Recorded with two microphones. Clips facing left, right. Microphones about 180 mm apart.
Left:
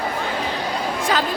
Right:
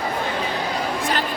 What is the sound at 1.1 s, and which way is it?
Chatter, 90° left.